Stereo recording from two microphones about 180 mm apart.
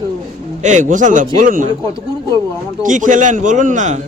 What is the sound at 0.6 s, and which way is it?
A man's voice, 40° right (ahead or behind).